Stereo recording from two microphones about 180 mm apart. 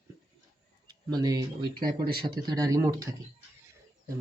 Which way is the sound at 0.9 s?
20° right (ahead or behind).